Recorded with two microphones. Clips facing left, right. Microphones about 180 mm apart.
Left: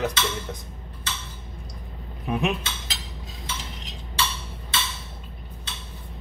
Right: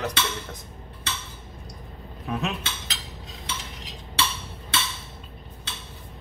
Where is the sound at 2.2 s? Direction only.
15° left (ahead or behind).